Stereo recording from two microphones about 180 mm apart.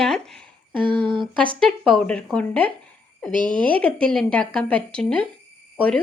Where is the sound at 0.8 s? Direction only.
25° right (ahead or behind).